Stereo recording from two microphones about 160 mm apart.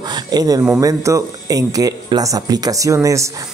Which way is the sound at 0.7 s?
20° right (ahead or behind).